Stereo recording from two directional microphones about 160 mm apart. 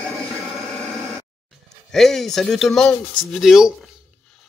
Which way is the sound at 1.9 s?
Centre (ahead or behind).